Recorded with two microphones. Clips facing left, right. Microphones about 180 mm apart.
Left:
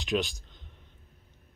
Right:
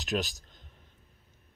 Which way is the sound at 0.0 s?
45° right (ahead or behind).